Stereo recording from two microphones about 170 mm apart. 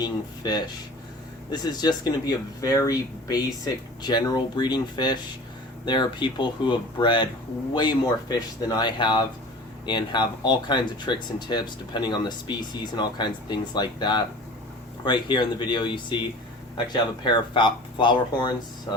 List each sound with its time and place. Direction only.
0.0 s speech: 25° left (ahead or behind)